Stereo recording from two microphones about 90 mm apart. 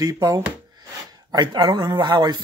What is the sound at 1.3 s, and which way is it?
Speech, 55° right (ahead or behind).